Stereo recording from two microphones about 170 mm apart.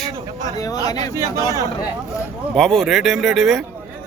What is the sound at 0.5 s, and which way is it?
Speech, 20° left (ahead or behind).